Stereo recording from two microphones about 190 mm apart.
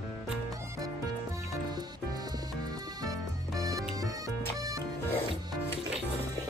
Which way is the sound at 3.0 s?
20° right (ahead or behind).